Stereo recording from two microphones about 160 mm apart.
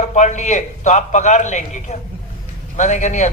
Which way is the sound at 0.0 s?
45° left (ahead or behind).